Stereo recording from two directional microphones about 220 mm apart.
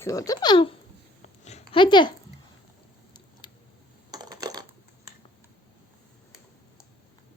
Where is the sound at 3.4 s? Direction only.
20° left (ahead or behind).